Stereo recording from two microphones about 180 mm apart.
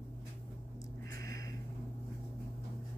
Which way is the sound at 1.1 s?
20° left (ahead or behind).